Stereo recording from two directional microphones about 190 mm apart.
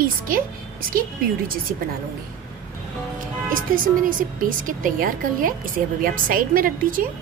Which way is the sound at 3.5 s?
45° right (ahead or behind).